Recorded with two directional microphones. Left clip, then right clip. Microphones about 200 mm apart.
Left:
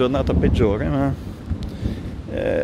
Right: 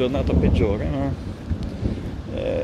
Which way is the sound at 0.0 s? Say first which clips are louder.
Left 2 dB; 40° left (ahead or behind).